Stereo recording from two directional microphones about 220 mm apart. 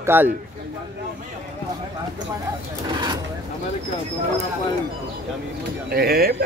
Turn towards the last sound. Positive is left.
turn(degrees=-45)  # may be behind; listen again after turning